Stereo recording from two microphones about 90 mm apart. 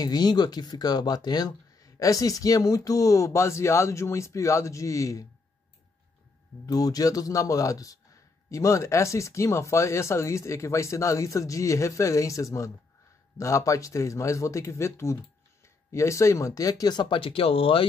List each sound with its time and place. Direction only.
0.0 s speech: 50° left (ahead or behind)
6.6 s speech: 45° left (ahead or behind); by 17.8 s 90° left